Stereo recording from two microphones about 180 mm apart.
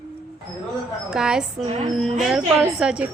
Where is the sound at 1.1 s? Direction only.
5° right (ahead or behind).